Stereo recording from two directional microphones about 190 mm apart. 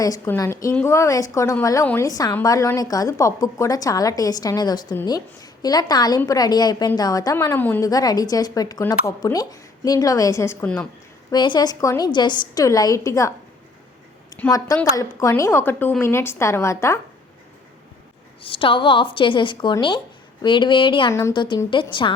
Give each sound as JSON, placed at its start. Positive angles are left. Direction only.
{"t": 0.0, "sound": "a woman's voice", "side_deg": 15}
{"t": 11.3, "sound": "a woman's voice", "side_deg": 25}
{"t": 14.9, "sound": "a woman's voice", "side_deg": 15}
{"t": 18.4, "sound": "a woman's voice", "side_deg": 30}